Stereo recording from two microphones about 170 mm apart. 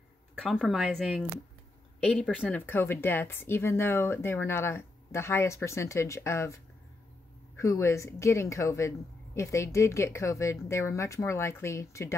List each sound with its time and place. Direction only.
0.4 s speech: centre (ahead or behind)
7.5 s speech: 15° left (ahead or behind)